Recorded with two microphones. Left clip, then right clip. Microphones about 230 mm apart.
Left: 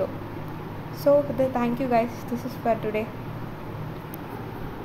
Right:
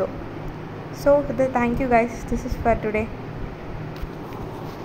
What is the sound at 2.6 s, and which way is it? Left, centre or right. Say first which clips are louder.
Speech: right 4 dB; centre.